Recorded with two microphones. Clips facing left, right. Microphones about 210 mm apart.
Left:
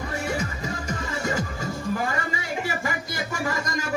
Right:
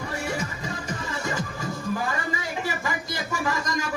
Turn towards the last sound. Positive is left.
turn(degrees=40)  # may be behind; listen again after turning